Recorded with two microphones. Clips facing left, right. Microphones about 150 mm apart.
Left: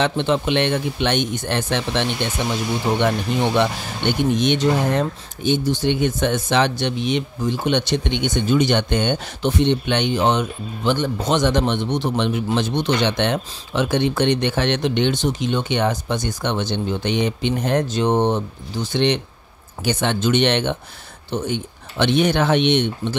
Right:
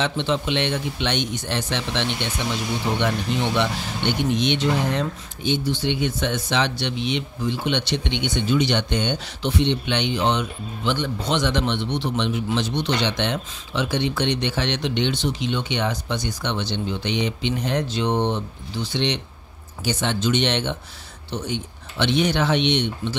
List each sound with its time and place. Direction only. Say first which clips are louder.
0.0 s speech: left 4 dB; 55° left (ahead or behind)